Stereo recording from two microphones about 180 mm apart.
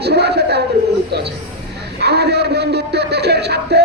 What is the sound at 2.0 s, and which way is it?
Music, 65° right (ahead or behind).